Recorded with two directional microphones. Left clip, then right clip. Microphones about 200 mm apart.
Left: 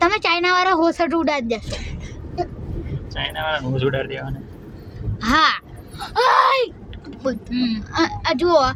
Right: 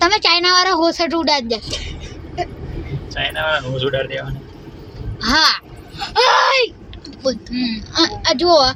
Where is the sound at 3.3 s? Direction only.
35° left (ahead or behind).